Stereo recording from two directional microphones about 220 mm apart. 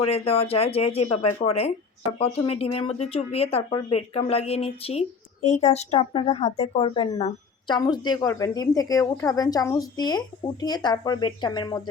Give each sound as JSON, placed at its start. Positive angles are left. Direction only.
{"t": 0.1, "sound": "speech", "side_deg": 25}